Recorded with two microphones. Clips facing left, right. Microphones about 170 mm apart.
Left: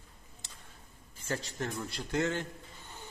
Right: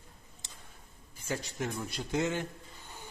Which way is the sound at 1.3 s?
15° right (ahead or behind).